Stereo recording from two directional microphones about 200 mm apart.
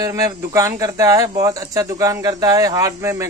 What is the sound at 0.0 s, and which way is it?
A man's voice, 15° right (ahead or behind).